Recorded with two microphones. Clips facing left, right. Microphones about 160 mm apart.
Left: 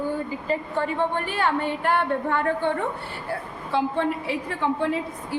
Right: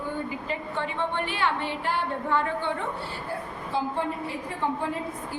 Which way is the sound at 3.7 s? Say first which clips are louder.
Left 5 dB; 80° left.